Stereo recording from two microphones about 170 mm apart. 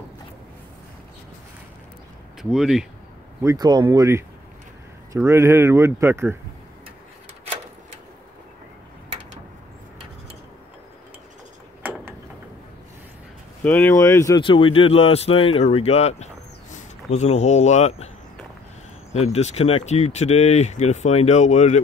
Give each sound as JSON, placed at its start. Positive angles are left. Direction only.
{"t": 2.5, "sound": "speech", "side_deg": -5}
{"t": 3.4, "sound": "speech", "side_deg": -25}
{"t": 11.8, "sound": "a sound", "side_deg": -10}
{"t": 13.7, "sound": "speech", "side_deg": 10}
{"t": 14.4, "sound": "speech", "side_deg": 30}
{"t": 19.1, "sound": "speech", "side_deg": 40}